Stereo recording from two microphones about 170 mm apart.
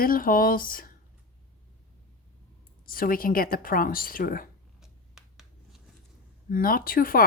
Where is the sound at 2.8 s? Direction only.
55° left (ahead or behind).